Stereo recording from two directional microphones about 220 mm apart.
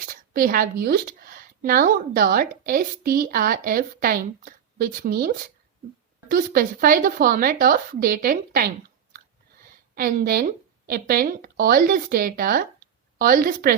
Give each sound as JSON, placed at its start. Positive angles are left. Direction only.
{"t": 0.0, "sound": "speech", "side_deg": -40}
{"t": 9.9, "sound": "a woman's voice", "side_deg": -45}